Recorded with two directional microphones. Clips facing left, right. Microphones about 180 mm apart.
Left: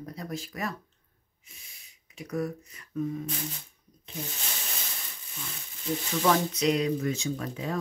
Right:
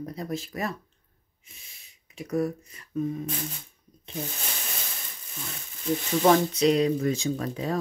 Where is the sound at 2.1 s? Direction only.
30° right (ahead or behind).